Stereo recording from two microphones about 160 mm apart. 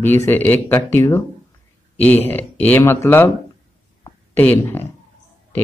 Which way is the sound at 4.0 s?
15° left (ahead or behind).